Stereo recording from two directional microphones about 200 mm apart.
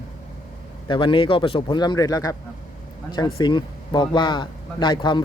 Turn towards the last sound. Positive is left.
turn(degrees=20)  # may be behind; listen again after turning